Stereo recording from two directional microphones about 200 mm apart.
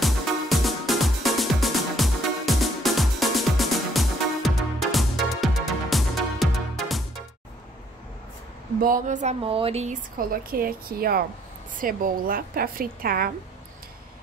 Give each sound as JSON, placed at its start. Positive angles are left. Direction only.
{"t": 0.0, "sound": "music", "side_deg": 0}
{"t": 8.8, "sound": "speech", "side_deg": -40}
{"t": 10.1, "sound": "a woman's voice", "side_deg": -45}